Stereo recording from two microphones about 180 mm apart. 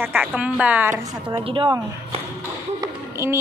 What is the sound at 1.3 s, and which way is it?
Speech, 30° right (ahead or behind).